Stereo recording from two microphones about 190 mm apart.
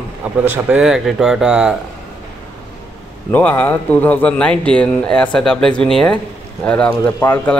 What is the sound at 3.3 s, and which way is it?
Speech, 10° left (ahead or behind).